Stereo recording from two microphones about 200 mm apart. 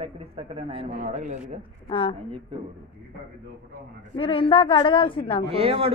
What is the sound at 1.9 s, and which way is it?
Speech, 25° left (ahead or behind).